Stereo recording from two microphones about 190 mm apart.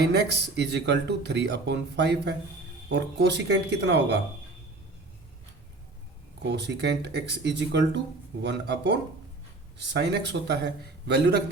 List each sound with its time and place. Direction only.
0.1 s speech: 60° right (ahead or behind)
6.4 s speech: 65° right (ahead or behind)